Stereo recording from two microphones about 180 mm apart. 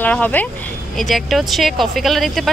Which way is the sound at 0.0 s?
10° left (ahead or behind).